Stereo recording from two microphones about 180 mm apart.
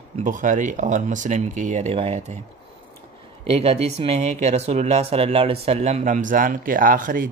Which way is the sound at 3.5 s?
35° right (ahead or behind).